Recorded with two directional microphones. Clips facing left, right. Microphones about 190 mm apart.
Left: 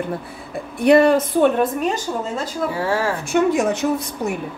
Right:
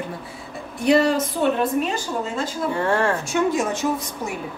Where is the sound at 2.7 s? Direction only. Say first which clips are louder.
Right 2 dB; 5° left (ahead or behind).